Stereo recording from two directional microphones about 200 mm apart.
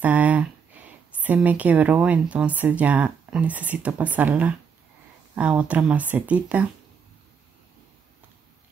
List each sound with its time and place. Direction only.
0.0 s speech: 5° right (ahead or behind)